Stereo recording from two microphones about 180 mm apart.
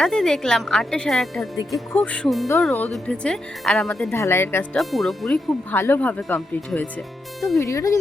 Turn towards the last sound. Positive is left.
turn(degrees=20)  # may be behind; listen again after turning